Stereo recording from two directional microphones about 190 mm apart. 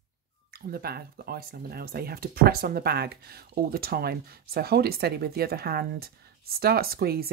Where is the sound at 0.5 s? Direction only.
55° right (ahead or behind).